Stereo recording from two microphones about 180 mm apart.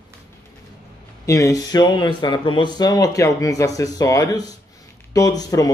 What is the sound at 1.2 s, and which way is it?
Speech, 20° left (ahead or behind).